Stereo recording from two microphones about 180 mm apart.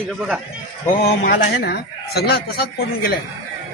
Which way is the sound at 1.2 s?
70° left (ahead or behind).